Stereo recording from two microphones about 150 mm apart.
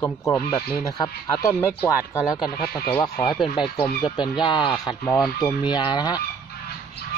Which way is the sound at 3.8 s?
35° left (ahead or behind).